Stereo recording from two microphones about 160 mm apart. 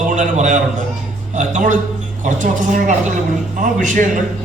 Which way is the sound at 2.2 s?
50° right (ahead or behind).